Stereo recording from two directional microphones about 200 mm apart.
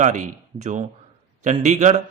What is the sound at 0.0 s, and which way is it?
A man's voice, 40° right (ahead or behind).